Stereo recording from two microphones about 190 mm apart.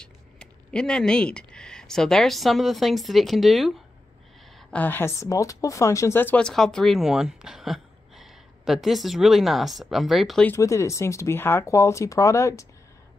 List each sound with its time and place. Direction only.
0.0 s speech: 5° left (ahead or behind)
10.5 s speech: 15° left (ahead or behind)